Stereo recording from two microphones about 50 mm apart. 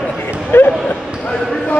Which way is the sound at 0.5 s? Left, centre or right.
Left.